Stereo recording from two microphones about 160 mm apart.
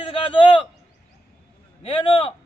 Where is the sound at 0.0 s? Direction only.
35° left (ahead or behind).